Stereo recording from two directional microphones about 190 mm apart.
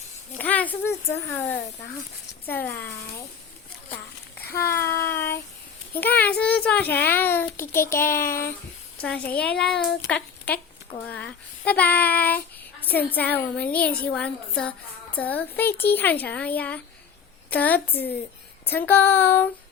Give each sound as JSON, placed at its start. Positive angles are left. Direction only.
{"t": 0.3, "sound": "a child's voice", "side_deg": 10}
{"t": 4.4, "sound": "a sound", "side_deg": 55}
{"t": 4.7, "sound": "child singing", "side_deg": 10}
{"t": 5.9, "sound": "a child's voice", "side_deg": 10}
{"t": 9.7, "sound": "child singing", "side_deg": 65}
{"t": 10.1, "sound": "a sound", "side_deg": 5}
{"t": 11.0, "sound": "child singing", "side_deg": 5}
{"t": 12.8, "sound": "a child's voice", "side_deg": 10}